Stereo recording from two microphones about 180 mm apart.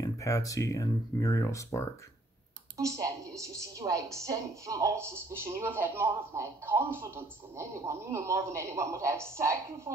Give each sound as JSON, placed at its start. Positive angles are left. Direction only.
{"t": 0.0, "sound": "speech", "side_deg": 20}
{"t": 2.8, "sound": "a woman's voice", "side_deg": -15}